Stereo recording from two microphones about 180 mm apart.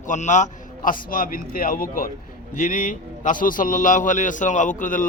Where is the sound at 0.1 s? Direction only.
40° left (ahead or behind).